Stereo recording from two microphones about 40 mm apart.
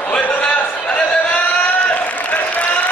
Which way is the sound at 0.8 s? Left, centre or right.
Left.